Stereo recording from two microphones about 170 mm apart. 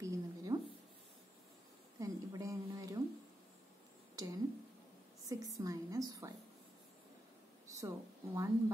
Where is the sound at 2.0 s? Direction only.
20° right (ahead or behind).